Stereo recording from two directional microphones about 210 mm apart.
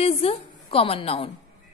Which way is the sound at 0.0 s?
30° left (ahead or behind).